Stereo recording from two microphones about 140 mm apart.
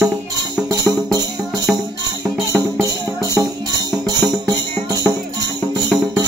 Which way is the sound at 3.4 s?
25° right (ahead or behind).